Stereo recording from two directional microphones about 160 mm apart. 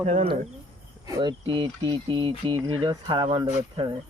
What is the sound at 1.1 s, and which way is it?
Speech, 25° right (ahead or behind).